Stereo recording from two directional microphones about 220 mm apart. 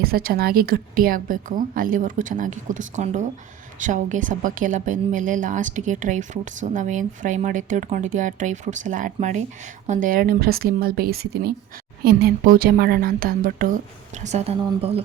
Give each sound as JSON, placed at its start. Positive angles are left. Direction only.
{"t": 0.0, "sound": "a woman's voice", "side_deg": -45}
{"t": 14.3, "sound": "speech", "side_deg": -30}